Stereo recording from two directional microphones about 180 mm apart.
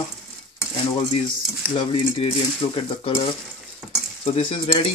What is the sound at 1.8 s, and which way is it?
Speech, 30° left (ahead or behind).